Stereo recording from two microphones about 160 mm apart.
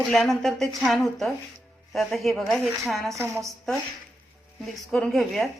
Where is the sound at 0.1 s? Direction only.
Centre (ahead or behind).